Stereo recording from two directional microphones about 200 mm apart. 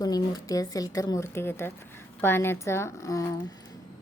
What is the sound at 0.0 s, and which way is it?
Speech, 20° left (ahead or behind).